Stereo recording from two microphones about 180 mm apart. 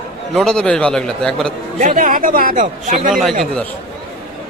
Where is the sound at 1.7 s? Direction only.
45° right (ahead or behind).